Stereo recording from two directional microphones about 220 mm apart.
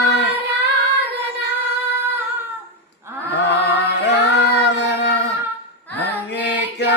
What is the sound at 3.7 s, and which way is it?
Music, 50° left (ahead or behind).